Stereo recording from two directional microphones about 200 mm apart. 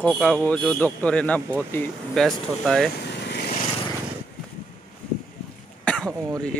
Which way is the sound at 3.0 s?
55° left (ahead or behind).